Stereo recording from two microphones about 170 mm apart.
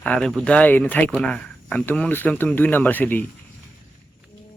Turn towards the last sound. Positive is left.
turn(degrees=10)  # may be behind; listen again after turning